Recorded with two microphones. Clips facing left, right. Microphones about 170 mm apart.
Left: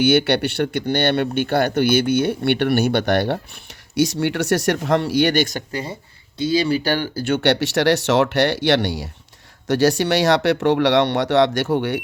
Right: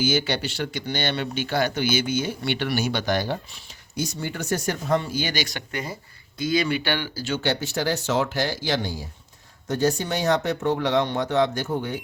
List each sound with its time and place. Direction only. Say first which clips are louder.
0.0 s speech: left 7 dB; 65° left (ahead or behind)
5.5 s speech: left 4 dB; 30° left (ahead or behind)
7.3 s speech: left 8 dB; 70° left (ahead or behind)
9.6 s speech: left 6 dB; 90° left; by 12.0 s 75° left (ahead or behind)